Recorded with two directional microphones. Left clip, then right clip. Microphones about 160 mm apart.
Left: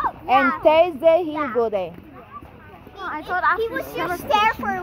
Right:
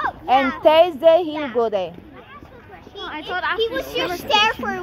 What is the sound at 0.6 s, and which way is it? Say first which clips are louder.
Speech: right 5 dB; 55° right (ahead or behind).